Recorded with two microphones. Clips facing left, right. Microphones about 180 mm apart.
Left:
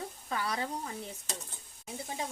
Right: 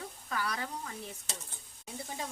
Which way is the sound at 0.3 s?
25° left (ahead or behind).